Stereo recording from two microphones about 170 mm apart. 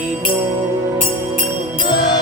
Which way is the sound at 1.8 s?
25° left (ahead or behind).